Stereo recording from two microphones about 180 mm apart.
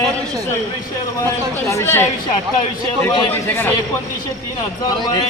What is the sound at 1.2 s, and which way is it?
Speech, 15° left (ahead or behind).